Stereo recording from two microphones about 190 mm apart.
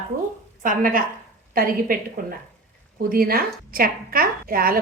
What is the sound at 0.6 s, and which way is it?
A woman's voice, 45° right (ahead or behind).